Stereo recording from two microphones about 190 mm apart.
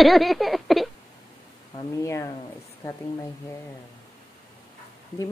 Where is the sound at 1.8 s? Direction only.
15° left (ahead or behind).